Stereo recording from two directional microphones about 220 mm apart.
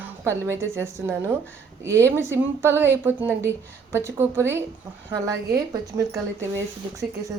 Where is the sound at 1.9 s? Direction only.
10° right (ahead or behind).